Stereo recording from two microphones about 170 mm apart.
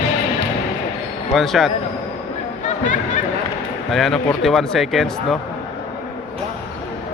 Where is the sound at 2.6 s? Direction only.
50° left (ahead or behind).